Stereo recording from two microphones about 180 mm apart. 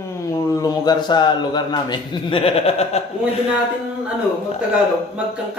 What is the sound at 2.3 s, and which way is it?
Chuckle, 30° left (ahead or behind).